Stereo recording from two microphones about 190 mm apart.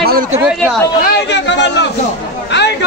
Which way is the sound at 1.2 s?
65° left (ahead or behind).